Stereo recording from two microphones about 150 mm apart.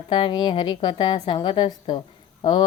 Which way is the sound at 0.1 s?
30° left (ahead or behind).